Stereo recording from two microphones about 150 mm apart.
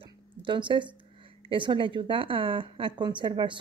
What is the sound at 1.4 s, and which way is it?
Speech, 35° right (ahead or behind).